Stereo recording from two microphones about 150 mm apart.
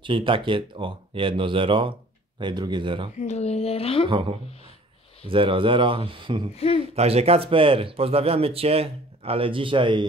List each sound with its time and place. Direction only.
0.0 s speech: 35° right (ahead or behind)
3.2 s speech: 50° left (ahead or behind)
4.1 s speech: 35° right (ahead or behind)
6.5 s speech: 40° left (ahead or behind)
7.0 s speech: 45° right (ahead or behind)